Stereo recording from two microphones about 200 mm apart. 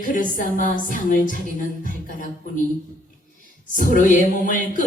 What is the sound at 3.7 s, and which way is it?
Music, 40° left (ahead or behind).